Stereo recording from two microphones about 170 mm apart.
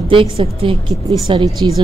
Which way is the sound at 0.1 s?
35° right (ahead or behind).